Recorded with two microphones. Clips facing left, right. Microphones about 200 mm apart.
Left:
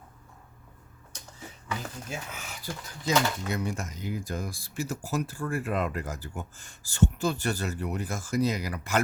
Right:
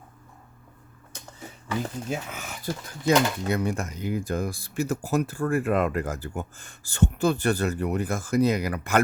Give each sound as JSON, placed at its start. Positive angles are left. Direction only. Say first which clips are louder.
{"t": 1.6, "sound": "speech", "louder": "right 7 dB", "side_deg": -40}
{"t": 3.1, "sound": "speech", "louder": "right 5 dB", "side_deg": -60}